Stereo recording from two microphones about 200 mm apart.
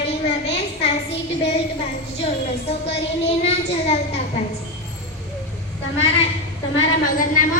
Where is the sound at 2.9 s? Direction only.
30° left (ahead or behind).